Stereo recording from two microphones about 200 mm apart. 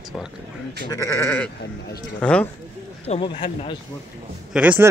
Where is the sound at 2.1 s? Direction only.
5° left (ahead or behind).